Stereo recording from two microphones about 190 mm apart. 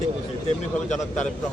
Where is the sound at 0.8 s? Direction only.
40° left (ahead or behind).